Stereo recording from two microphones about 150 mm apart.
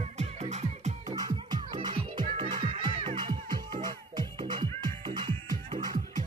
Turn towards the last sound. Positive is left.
turn(degrees=-30)  # may be behind; listen again after turning